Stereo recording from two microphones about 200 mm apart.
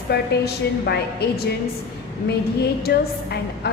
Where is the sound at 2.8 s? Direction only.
55° left (ahead or behind).